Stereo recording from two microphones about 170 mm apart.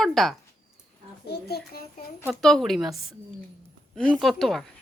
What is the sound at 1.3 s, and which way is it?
Speech, 70° left (ahead or behind).